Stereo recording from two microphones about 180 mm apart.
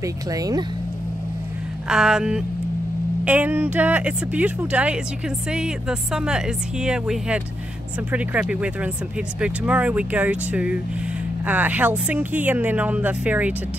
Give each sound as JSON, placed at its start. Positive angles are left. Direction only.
{"t": 0.0, "sound": "speech", "side_deg": -20}
{"t": 1.9, "sound": "speech", "side_deg": -5}